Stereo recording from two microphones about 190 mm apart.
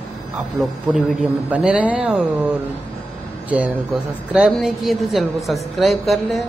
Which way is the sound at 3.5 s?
5° right (ahead or behind).